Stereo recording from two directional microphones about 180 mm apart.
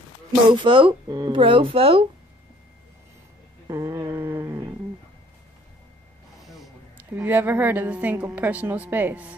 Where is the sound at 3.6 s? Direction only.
15° right (ahead or behind).